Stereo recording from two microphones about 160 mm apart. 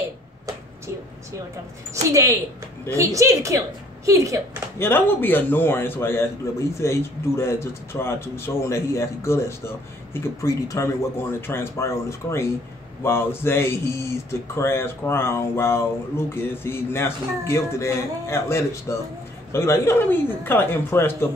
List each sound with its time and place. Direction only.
2.0 s a woman's voice: 20° right (ahead or behind)
4.7 s a man's voice: 15° left (ahead or behind)